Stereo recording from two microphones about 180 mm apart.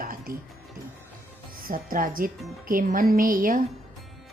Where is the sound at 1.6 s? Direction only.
50° right (ahead or behind).